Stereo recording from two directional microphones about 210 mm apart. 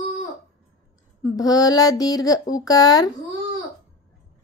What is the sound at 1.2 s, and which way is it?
Speech, 15° left (ahead or behind).